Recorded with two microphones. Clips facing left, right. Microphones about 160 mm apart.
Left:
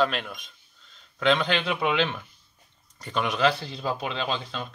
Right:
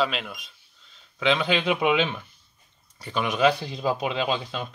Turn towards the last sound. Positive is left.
turn(degrees=-15)  # may be behind; listen again after turning